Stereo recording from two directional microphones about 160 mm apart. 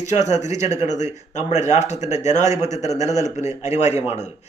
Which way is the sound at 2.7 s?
45° left (ahead or behind).